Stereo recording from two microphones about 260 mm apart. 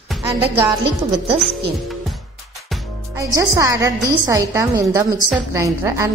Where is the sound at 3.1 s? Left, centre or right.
Centre.